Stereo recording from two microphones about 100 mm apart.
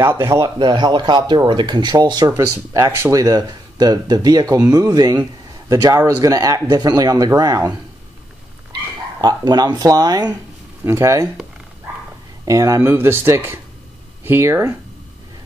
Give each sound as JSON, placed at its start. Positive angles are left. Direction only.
{"t": 0.2, "sound": "speech", "side_deg": -30}
{"t": 0.6, "sound": "speech", "side_deg": -50}
{"t": 9.2, "sound": "speech", "side_deg": -45}
{"t": 10.8, "sound": "speech", "side_deg": -30}
{"t": 12.4, "sound": "speech", "side_deg": -35}
{"t": 12.8, "sound": "speech", "side_deg": -20}